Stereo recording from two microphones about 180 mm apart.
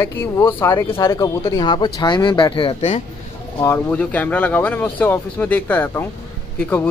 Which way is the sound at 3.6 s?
10° left (ahead or behind).